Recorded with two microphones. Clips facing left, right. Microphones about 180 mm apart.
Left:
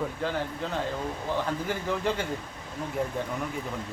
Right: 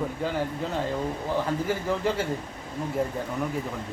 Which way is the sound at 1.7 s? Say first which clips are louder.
Right 2 dB; 5° right (ahead or behind).